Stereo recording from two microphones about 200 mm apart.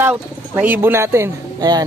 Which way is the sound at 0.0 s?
10° right (ahead or behind).